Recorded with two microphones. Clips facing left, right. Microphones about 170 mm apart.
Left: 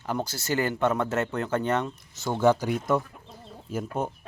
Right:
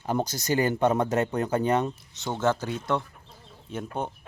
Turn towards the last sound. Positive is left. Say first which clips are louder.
# left 2 dB
turn(degrees=5)  # may be behind; listen again after turning